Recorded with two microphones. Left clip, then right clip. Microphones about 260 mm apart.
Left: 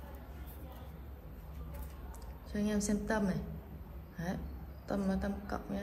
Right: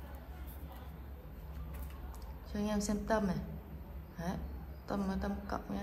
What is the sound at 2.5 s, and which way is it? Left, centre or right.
A woman's voice, centre.